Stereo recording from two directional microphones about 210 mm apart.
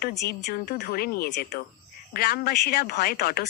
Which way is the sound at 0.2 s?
50° left (ahead or behind).